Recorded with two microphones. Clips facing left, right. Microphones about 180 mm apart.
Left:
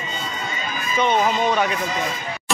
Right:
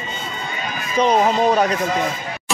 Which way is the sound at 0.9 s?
35° right (ahead or behind).